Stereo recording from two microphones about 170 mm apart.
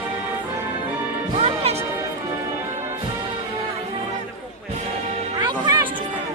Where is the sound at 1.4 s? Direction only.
40° right (ahead or behind).